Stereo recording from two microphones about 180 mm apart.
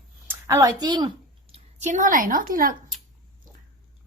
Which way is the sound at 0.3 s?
15° right (ahead or behind).